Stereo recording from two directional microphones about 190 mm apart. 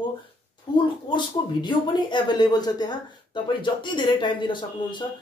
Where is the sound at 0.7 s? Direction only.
25° left (ahead or behind).